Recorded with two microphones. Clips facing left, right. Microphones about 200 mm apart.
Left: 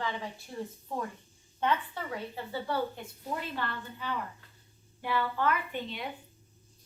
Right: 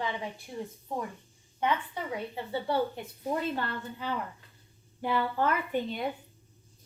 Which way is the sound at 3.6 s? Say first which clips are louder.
Right 2 dB; 40° right (ahead or behind).